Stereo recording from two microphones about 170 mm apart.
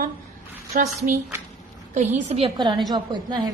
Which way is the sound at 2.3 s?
30° right (ahead or behind).